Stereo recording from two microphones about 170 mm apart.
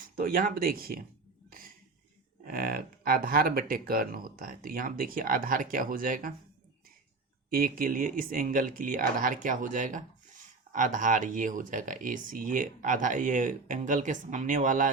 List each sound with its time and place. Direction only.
0.0 s speech: 55° right (ahead or behind)
2.5 s speech: 60° right (ahead or behind)
7.5 s speech: 55° right (ahead or behind)